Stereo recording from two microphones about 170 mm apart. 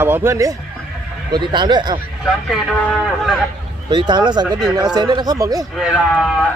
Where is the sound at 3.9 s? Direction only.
25° right (ahead or behind).